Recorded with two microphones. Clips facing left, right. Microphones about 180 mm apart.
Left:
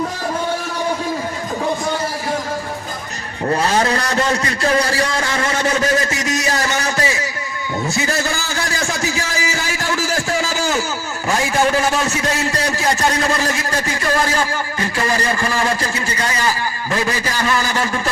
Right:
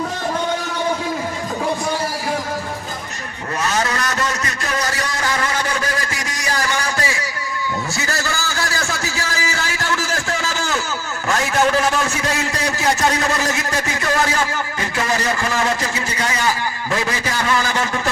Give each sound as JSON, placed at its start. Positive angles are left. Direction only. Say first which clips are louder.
{"t": 3.5, "sound": "a man's voice", "louder": "left 4 dB", "side_deg": 30}
{"t": 8.9, "sound": "a sound", "louder": "left 3 dB", "side_deg": 15}
{"t": 14.9, "sound": "a man's voice", "louder": "left 1 dB", "side_deg": -5}